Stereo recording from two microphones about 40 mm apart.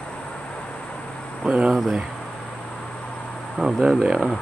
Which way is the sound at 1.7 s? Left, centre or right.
Centre.